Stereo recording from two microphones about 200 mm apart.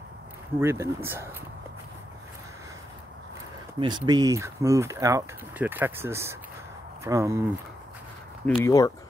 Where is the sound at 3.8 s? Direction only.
25° right (ahead or behind).